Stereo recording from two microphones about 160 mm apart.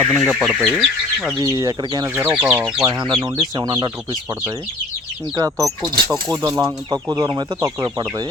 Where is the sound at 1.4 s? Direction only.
25° right (ahead or behind).